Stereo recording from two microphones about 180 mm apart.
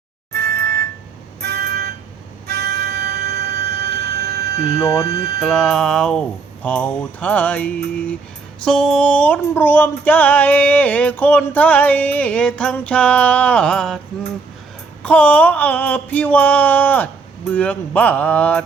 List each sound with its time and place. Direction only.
0.3 s music: 65° right (ahead or behind)
5.0 s speech: 60° right (ahead or behind)
5.4 s speech: centre (ahead or behind)
8.6 s music: 5° left (ahead or behind)
15.0 s music: 10° left (ahead or behind)